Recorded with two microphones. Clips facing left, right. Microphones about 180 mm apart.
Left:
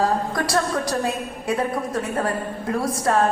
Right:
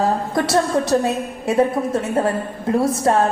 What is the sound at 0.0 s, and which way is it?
A woman's voice, 25° right (ahead or behind).